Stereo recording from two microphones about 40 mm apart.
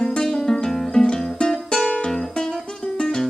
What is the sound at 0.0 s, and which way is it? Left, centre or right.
Music, centre.